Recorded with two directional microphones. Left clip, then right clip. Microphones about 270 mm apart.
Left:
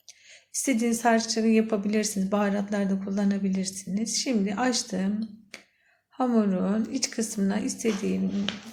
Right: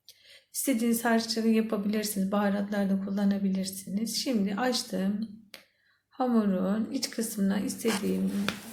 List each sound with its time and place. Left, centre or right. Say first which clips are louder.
0.5 s speech: left 2 dB; left